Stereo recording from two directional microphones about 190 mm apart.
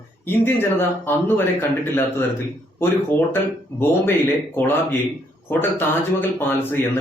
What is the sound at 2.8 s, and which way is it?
Speech, 10° left (ahead or behind).